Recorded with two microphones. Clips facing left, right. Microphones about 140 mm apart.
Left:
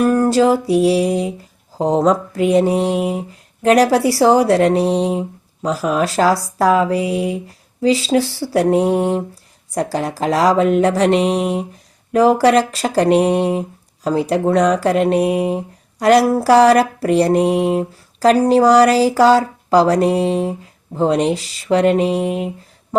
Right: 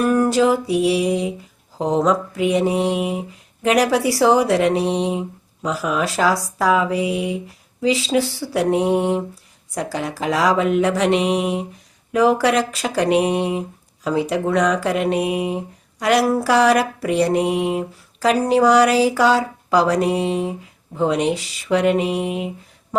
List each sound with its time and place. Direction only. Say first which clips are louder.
0.0 s mantra: left 3 dB; 30° left (ahead or behind)
17.7 s speech: left 4 dB; 35° left (ahead or behind)
18.5 s mantra: left 1 dB; 35° left (ahead or behind)